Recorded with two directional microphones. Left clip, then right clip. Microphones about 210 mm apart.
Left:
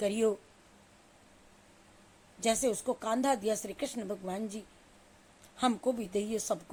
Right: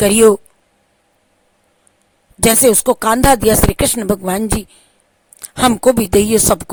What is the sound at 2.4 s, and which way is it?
Speech, 50° right (ahead or behind).